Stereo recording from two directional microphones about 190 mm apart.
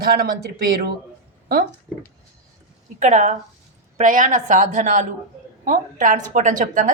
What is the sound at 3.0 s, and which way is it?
A woman's voice, 40° right (ahead or behind).